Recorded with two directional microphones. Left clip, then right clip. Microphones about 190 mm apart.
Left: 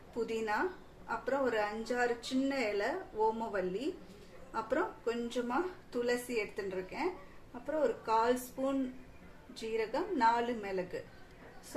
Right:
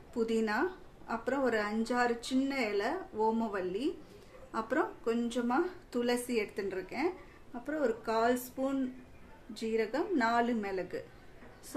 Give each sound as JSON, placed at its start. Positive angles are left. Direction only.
{"t": 0.3, "sound": "speech", "side_deg": -30}